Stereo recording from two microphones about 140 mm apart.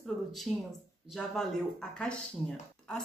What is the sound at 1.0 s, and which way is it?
Speech, centre (ahead or behind).